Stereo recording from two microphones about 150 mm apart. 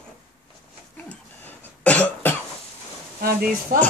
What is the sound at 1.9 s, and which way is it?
Cough, 10° left (ahead or behind).